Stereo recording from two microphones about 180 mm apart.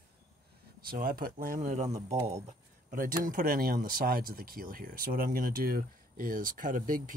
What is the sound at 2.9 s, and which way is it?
Speech, 50° right (ahead or behind).